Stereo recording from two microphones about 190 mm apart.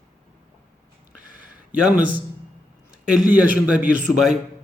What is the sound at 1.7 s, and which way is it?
Speech, 5° right (ahead or behind).